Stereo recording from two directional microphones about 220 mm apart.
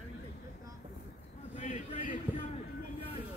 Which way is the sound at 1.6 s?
35° left (ahead or behind).